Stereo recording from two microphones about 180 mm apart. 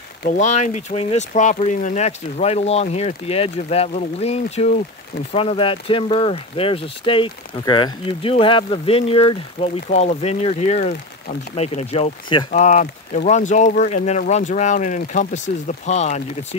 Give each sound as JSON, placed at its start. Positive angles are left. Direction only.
{"t": 0.4, "sound": "speech", "side_deg": 40}
{"t": 12.4, "sound": "speech", "side_deg": 40}